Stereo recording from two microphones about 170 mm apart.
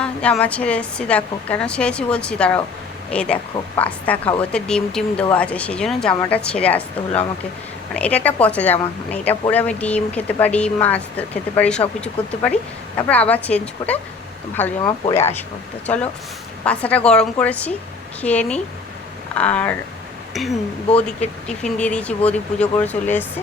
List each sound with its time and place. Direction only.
0.0 s a woman's voice: 5° left (ahead or behind)
14.8 s a woman's voice: 25° left (ahead or behind); by 19.7 s 10° left (ahead or behind)
20.9 s speech: 40° left (ahead or behind)
21.6 s a woman's voice: 5° left (ahead or behind)